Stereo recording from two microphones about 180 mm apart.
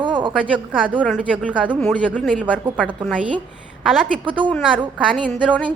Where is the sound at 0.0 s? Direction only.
25° right (ahead or behind).